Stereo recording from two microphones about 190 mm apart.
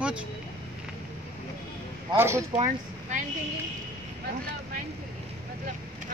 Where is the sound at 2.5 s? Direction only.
35° right (ahead or behind).